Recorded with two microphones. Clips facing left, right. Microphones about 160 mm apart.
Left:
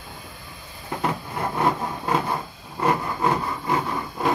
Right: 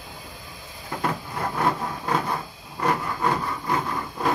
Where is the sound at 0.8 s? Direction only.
20° left (ahead or behind).